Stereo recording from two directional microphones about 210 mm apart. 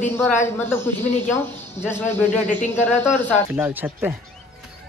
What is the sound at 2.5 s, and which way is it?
Speech, 35° left (ahead or behind).